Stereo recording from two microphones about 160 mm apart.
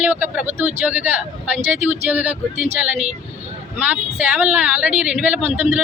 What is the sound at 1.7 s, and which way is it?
Speech, 45° right (ahead or behind).